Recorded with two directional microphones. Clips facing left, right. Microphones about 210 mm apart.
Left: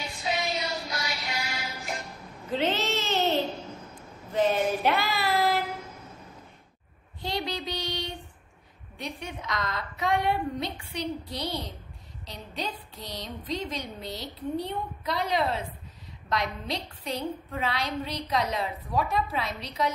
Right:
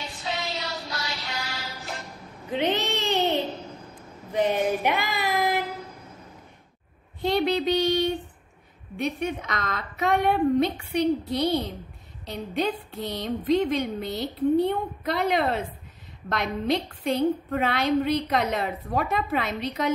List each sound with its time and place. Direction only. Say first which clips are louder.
0.2 s music: left 2 dB; 15° left (ahead or behind)
2.5 s a sound: right 2 dB; 15° right (ahead or behind)
4.3 s child singing: right 1 dB; 15° right (ahead or behind)
7.2 s child singing: right 9 dB; 55° right (ahead or behind)
9.2 s a woman's voice: right 5 dB; 55° right (ahead or behind)